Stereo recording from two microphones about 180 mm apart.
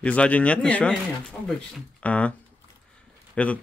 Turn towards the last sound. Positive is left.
turn(degrees=5)  # may be behind; listen again after turning